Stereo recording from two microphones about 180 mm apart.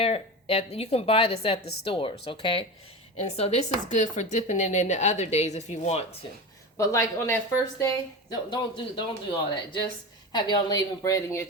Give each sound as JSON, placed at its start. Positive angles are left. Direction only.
{"t": 0.0, "sound": "a man's voice", "side_deg": 35}
{"t": 6.7, "sound": "a man's voice", "side_deg": 15}